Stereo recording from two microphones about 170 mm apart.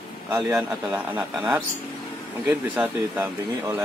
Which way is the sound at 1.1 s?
10° right (ahead or behind).